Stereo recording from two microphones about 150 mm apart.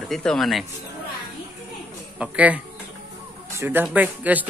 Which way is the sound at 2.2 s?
10° right (ahead or behind).